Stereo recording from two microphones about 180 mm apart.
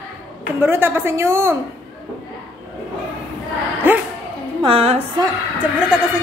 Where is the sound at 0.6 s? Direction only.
15° right (ahead or behind).